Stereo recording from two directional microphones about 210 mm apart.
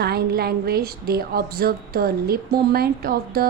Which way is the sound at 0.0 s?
50° right (ahead or behind).